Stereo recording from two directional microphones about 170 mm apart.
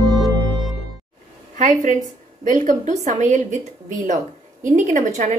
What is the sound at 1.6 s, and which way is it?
A woman's voice, 45° right (ahead or behind).